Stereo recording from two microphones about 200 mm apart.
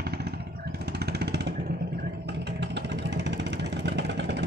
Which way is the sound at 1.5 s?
45° right (ahead or behind).